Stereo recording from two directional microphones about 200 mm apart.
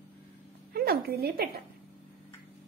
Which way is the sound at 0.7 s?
50° right (ahead or behind).